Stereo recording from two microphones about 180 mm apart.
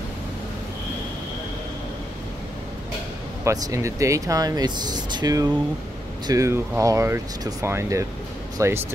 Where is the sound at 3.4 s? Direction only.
20° right (ahead or behind).